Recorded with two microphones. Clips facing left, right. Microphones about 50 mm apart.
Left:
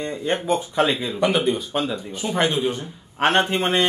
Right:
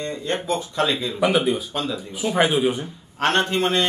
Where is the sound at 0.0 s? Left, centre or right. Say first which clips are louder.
Left 2 dB; centre.